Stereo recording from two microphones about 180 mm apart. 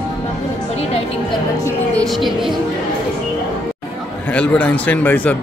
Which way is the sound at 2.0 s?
Centre (ahead or behind).